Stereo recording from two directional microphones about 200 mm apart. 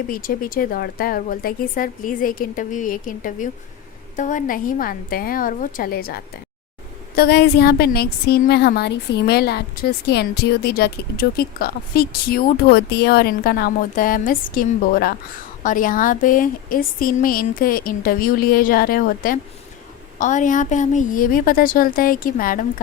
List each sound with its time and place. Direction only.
0.1 s a woman's voice: 45° left (ahead or behind)
7.2 s a woman's voice: 55° left (ahead or behind)